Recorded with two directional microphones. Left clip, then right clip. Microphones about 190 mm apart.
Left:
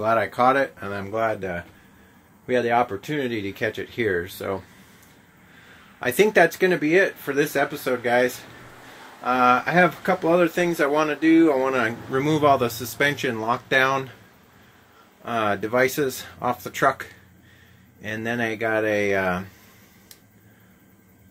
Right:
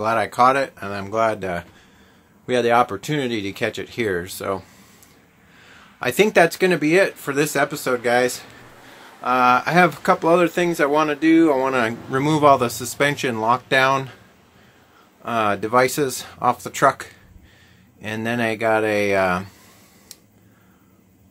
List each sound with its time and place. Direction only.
0.0 s speech: 10° right (ahead or behind)
5.9 s speech: 15° right (ahead or behind)
8.5 s a sound: centre (ahead or behind)
9.2 s speech: 15° right (ahead or behind)
15.2 s speech: 15° right (ahead or behind)